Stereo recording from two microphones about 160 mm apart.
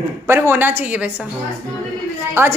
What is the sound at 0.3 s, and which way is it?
Speech, 15° right (ahead or behind).